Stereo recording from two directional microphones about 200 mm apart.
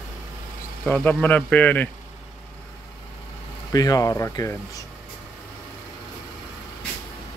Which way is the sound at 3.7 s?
20° left (ahead or behind).